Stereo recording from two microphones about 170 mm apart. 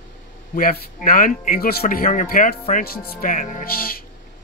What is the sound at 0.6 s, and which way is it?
Speech, 55° left (ahead or behind).